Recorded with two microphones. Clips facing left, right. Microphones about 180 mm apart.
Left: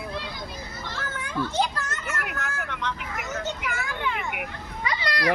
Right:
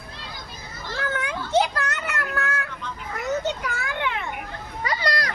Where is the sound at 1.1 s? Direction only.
65° right (ahead or behind).